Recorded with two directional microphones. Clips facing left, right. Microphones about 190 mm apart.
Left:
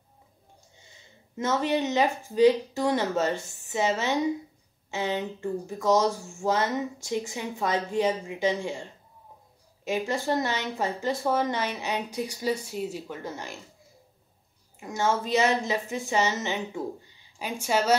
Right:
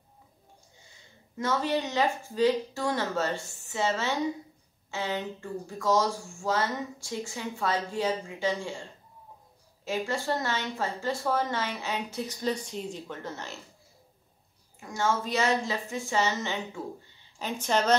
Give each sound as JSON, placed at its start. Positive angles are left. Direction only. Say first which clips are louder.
{"t": 1.3, "sound": "a woman's voice", "louder": "left 2 dB", "side_deg": 20}
{"t": 9.8, "sound": "a woman's voice", "louder": "left 3 dB", "side_deg": 15}
{"t": 14.8, "sound": "a woman's voice", "louder": "left 2 dB", "side_deg": 20}